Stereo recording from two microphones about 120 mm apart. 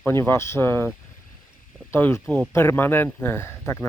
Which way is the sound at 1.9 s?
20° left (ahead or behind).